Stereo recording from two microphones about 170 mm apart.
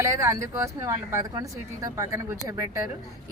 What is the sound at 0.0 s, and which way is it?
Speech, 15° right (ahead or behind).